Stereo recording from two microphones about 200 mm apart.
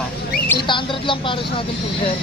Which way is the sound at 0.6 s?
25° left (ahead or behind).